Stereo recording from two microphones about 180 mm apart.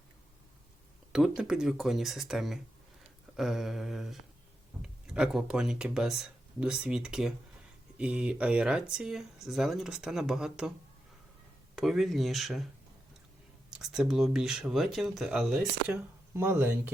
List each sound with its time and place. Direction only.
1.1 s speech: 5° right (ahead or behind)
11.8 s speech: centre (ahead or behind)
13.7 s speech: centre (ahead or behind)